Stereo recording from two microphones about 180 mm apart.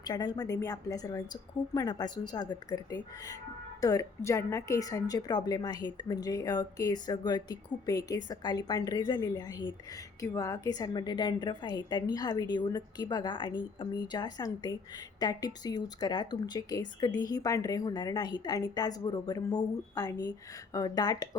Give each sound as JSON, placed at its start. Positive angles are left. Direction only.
{"t": 0.0, "sound": "a woman's voice", "side_deg": 20}